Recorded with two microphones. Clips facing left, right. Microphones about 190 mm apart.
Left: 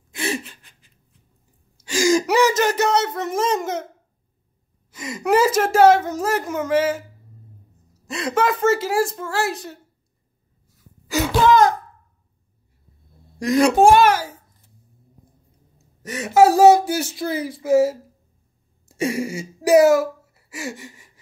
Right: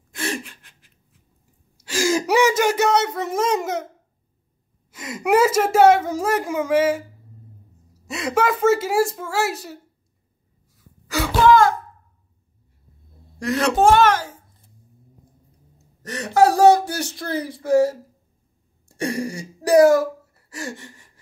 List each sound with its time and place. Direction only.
0.1 s gasp: 5° left (ahead or behind)
1.8 s a sound: 5° right (ahead or behind)
3.5 s speech: centre (ahead or behind)
4.9 s speech: 5° right (ahead or behind)
8.1 s speech: 5° right (ahead or behind)
11.1 s a sound: 20° left (ahead or behind)
13.4 s a woman's voice: 15° left (ahead or behind)
16.0 s speech: 5° left (ahead or behind)